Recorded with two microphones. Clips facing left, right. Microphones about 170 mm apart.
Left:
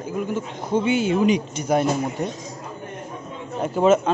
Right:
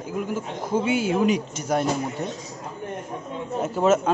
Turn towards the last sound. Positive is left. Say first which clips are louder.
# left 3 dB
turn(degrees=-5)  # may be behind; listen again after turning